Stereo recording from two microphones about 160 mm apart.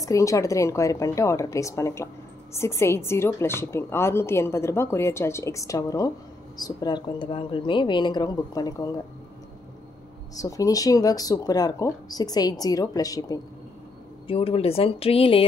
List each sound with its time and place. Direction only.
0.0 s a woman's voice: 20° left (ahead or behind)
10.4 s speech: 20° left (ahead or behind)
14.2 s speech: 35° left (ahead or behind)